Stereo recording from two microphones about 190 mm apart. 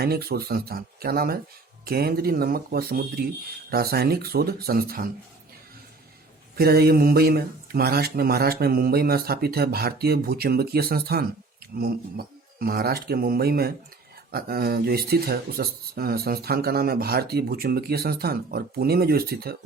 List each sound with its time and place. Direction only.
0.0 s speech: 55° right (ahead or behind)
6.6 s speech: 55° right (ahead or behind)